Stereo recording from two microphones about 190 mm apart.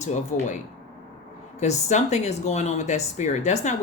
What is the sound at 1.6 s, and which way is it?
Speech, 35° left (ahead or behind).